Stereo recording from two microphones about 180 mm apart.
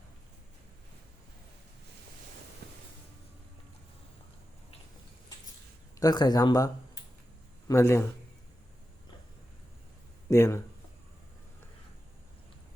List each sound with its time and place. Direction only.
2.6 s music: 65° right (ahead or behind)
6.0 s a man's voice: 20° left (ahead or behind)
10.2 s a man's voice: 15° left (ahead or behind)